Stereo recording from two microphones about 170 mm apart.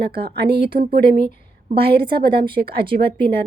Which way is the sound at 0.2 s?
70° right (ahead or behind).